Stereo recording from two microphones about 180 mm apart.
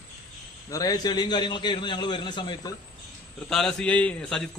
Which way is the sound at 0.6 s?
20° left (ahead or behind).